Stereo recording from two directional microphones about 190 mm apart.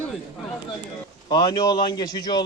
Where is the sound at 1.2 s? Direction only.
20° left (ahead or behind).